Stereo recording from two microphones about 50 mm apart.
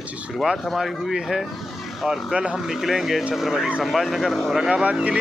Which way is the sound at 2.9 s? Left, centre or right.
Centre.